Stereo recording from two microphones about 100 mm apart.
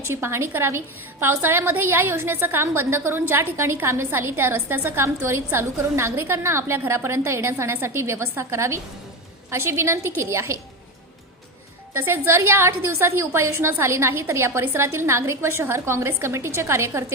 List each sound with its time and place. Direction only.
0.1 s a woman's voice: 25° right (ahead or behind)
11.9 s a woman's voice: 20° right (ahead or behind)